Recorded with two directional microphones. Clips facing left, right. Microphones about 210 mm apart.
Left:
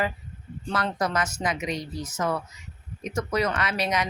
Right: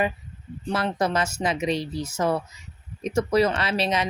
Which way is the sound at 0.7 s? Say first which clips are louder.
Right 3 dB; 25° right (ahead or behind).